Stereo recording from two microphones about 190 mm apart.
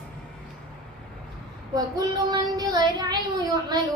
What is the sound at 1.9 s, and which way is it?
A woman's voice, 20° right (ahead or behind).